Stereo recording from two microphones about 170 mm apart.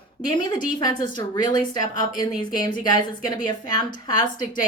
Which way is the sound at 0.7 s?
25° left (ahead or behind).